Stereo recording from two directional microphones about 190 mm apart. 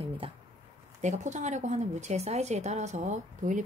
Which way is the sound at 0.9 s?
40° right (ahead or behind).